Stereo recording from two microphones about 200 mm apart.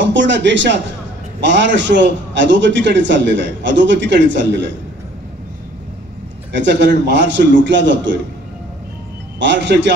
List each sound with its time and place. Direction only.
0.0 s a man's voice: 65° right (ahead or behind)
6.5 s a man's voice: 60° right (ahead or behind)
9.4 s a man's voice: 65° right (ahead or behind)